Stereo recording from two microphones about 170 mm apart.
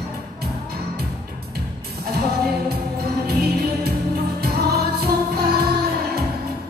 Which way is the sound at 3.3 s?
65° right (ahead or behind).